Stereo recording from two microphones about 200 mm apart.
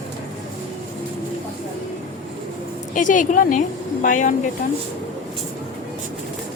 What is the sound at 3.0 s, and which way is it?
A woman's voice, 40° left (ahead or behind).